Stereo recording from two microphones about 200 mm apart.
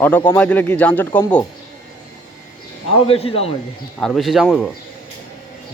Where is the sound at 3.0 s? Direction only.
30° left (ahead or behind).